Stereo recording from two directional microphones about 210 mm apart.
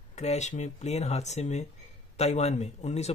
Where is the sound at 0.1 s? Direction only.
30° left (ahead or behind).